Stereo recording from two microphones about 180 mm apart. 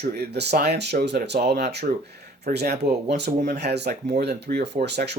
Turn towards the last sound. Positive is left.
turn(degrees=-70)  # may be behind; listen again after turning